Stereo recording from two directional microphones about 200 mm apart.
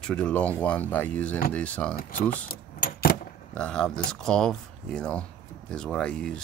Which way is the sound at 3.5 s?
5° left (ahead or behind).